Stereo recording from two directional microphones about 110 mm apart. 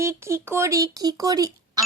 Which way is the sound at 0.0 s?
25° right (ahead or behind).